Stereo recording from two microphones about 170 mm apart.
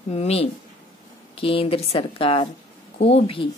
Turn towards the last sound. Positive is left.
turn(degrees=35)  # may be behind; listen again after turning